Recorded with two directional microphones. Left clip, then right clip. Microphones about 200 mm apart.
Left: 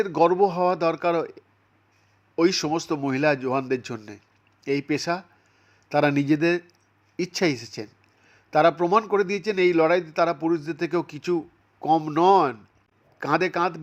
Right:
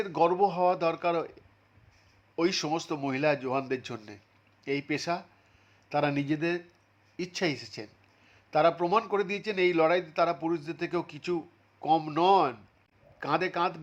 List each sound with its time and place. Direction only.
0.0 s a man's voice: 20° left (ahead or behind)